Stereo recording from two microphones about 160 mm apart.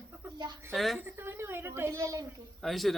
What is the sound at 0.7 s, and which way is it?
Speech, centre (ahead or behind).